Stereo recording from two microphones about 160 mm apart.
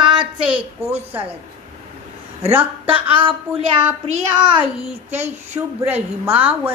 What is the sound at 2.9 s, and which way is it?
Speech, 35° right (ahead or behind).